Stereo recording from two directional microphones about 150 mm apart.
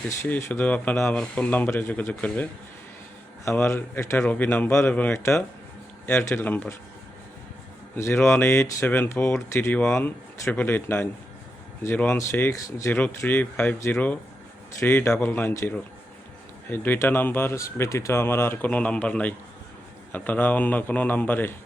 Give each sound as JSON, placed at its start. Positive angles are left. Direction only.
{"t": 0.1, "sound": "speech", "side_deg": 15}
{"t": 3.5, "sound": "speech", "side_deg": 15}
{"t": 7.9, "sound": "speech", "side_deg": 15}